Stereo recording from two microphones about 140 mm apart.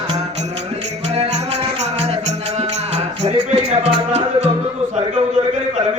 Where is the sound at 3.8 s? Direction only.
50° right (ahead or behind).